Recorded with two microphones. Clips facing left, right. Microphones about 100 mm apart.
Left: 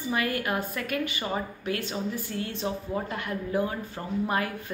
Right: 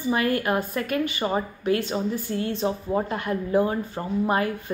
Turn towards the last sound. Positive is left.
turn(degrees=-30)  # may be behind; listen again after turning